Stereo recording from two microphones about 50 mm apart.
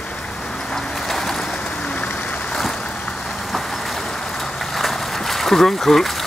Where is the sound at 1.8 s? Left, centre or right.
Left.